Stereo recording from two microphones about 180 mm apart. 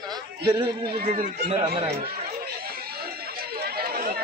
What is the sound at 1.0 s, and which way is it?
Speech, 50° right (ahead or behind).